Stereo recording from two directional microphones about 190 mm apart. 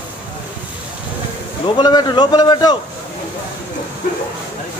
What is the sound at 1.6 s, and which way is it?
Speech, 20° left (ahead or behind).